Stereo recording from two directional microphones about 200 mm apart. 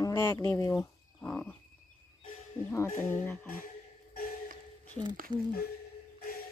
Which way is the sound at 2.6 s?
10° left (ahead or behind).